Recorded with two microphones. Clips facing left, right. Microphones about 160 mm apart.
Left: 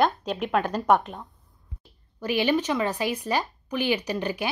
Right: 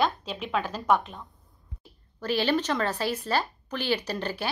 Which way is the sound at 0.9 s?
45° left (ahead or behind).